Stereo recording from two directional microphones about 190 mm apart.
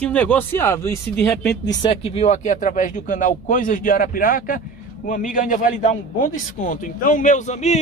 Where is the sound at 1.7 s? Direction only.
25° left (ahead or behind).